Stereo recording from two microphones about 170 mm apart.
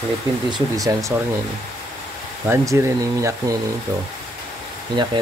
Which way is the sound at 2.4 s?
15° right (ahead or behind).